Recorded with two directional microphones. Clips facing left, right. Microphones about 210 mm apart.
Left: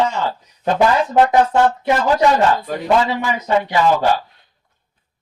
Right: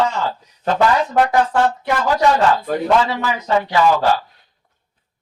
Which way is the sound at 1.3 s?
20° left (ahead or behind).